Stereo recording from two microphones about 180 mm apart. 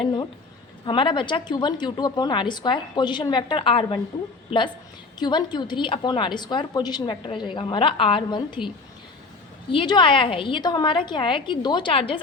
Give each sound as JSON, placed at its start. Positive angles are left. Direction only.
{"t": 0.0, "sound": "a woman's voice", "side_deg": 25}
{"t": 5.2, "sound": "a woman's voice", "side_deg": 25}
{"t": 9.7, "sound": "a woman's voice", "side_deg": 25}